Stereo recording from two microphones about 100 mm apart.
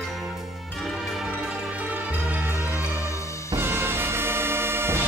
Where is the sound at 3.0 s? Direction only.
30° left (ahead or behind).